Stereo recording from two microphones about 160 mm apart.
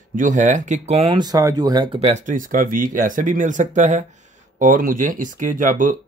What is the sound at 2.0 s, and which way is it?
Speech, 50° right (ahead or behind).